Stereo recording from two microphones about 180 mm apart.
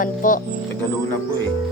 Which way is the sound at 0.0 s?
50° left (ahead or behind).